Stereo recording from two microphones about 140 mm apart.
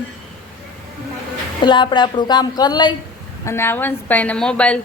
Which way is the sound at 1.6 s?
35° left (ahead or behind).